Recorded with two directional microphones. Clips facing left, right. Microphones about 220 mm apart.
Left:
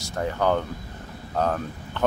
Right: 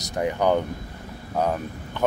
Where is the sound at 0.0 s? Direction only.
15° right (ahead or behind).